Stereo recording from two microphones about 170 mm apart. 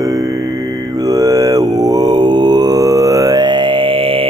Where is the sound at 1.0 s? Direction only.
20° right (ahead or behind).